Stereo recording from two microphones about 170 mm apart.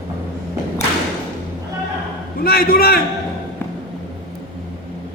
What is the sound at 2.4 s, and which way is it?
Speech, 60° left (ahead or behind).